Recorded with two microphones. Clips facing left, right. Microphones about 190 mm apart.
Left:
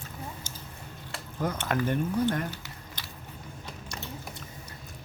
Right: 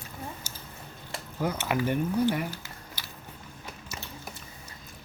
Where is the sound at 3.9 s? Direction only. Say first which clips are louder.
Left 2 dB; 5° right (ahead or behind).